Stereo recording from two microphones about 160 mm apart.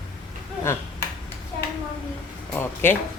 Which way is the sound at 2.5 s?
15° left (ahead or behind).